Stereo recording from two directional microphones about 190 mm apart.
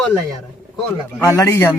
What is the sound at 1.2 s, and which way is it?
Speech, 15° left (ahead or behind).